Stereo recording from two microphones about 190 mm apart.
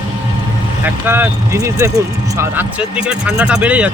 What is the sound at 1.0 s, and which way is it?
Speech, 10° right (ahead or behind).